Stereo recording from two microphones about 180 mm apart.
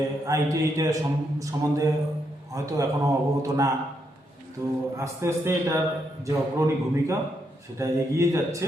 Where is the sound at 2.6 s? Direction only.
20° right (ahead or behind).